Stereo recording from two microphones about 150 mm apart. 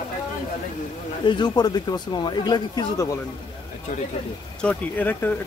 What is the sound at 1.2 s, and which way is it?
Speech, 30° left (ahead or behind).